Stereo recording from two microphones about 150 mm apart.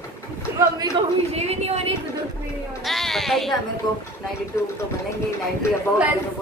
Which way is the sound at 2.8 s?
Centre (ahead or behind).